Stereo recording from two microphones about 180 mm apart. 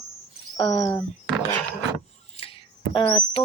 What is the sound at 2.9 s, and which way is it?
Speech, 25° left (ahead or behind).